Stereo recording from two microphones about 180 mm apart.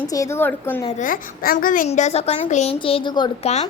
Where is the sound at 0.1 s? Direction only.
15° left (ahead or behind).